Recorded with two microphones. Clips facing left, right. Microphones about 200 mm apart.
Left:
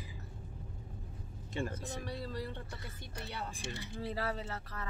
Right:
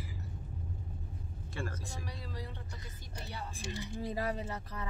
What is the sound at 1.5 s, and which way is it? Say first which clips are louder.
Speech: left 4 dB; 20° left (ahead or behind).